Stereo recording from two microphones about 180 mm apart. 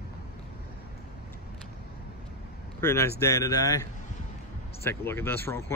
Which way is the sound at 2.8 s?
15° left (ahead or behind).